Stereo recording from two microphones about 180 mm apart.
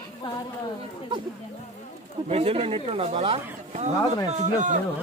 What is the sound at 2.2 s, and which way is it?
Speech, 35° right (ahead or behind).